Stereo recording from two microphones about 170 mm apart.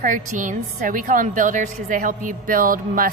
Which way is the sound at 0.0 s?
50° right (ahead or behind).